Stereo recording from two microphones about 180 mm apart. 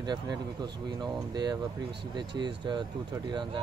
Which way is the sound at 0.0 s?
25° right (ahead or behind).